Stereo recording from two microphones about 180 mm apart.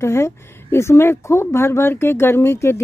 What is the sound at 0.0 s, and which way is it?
Speech, 15° left (ahead or behind).